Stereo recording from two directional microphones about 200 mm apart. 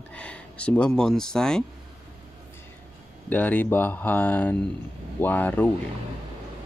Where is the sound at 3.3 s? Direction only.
10° left (ahead or behind).